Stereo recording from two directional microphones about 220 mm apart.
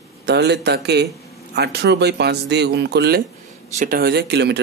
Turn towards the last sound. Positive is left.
turn(degrees=-50)  # may be behind; listen again after turning